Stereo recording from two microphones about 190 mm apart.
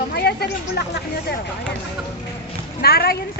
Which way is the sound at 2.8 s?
55° left (ahead or behind).